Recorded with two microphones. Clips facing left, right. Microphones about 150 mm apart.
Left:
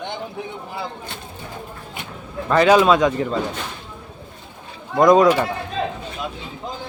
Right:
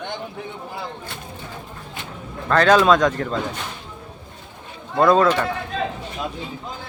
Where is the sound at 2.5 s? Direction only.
10° left (ahead or behind).